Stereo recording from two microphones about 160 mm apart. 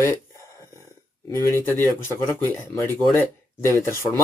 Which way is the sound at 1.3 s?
15° left (ahead or behind).